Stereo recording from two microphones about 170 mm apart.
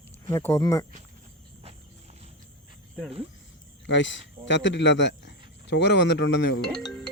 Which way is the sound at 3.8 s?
90° left.